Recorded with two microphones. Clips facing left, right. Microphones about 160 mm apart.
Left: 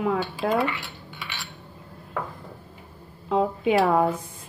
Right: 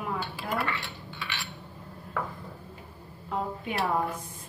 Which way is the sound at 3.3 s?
90° left.